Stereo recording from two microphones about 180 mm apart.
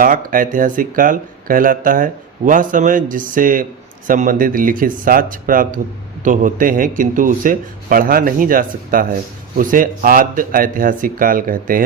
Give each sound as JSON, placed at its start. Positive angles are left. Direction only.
{"t": 0.0, "sound": "speech", "side_deg": -50}